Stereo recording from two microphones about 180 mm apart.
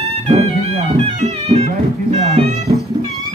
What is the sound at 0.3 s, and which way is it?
Music, 35° right (ahead or behind).